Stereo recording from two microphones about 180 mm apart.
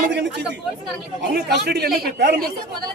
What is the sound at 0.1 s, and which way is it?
Speech, 75° right (ahead or behind).